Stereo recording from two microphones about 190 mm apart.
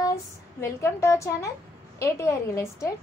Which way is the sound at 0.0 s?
15° left (ahead or behind).